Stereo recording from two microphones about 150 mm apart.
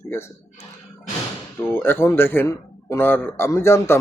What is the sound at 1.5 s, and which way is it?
Speech, 15° left (ahead or behind).